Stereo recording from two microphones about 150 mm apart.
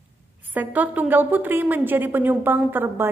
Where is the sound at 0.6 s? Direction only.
10° right (ahead or behind).